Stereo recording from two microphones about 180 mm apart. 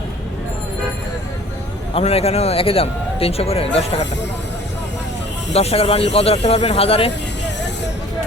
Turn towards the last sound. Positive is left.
turn(degrees=35)  # may be behind; listen again after turning